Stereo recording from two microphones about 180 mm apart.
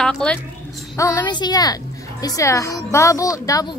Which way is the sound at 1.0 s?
15° left (ahead or behind).